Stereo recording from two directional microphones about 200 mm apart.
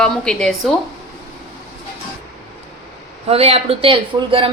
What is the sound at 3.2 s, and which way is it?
Speech, 30° right (ahead or behind).